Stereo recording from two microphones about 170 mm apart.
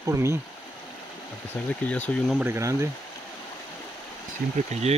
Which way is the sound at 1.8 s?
10° left (ahead or behind).